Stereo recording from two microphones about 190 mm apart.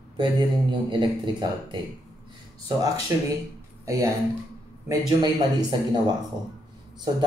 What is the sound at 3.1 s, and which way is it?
Speech, 15° right (ahead or behind).